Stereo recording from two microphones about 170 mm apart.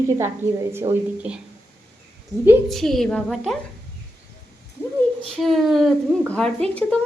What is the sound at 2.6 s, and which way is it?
Speech, centre (ahead or behind).